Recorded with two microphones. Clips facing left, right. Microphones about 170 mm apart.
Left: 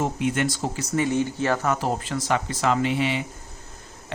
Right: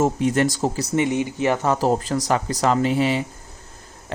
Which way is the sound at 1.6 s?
35° right (ahead or behind).